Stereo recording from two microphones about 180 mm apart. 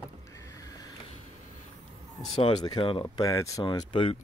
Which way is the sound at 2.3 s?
25° left (ahead or behind).